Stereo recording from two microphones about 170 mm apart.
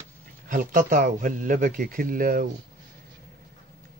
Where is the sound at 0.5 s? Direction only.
55° right (ahead or behind).